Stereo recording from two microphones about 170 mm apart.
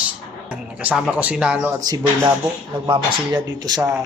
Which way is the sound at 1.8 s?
20° right (ahead or behind).